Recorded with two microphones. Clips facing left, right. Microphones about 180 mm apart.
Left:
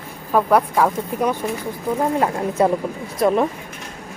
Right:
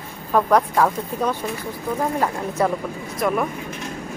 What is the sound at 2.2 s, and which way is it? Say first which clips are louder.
Speech: left 3 dB; 25° left (ahead or behind).